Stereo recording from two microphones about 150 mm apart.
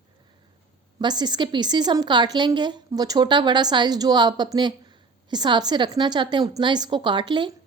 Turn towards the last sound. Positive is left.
turn(degrees=-30)  # may be behind; listen again after turning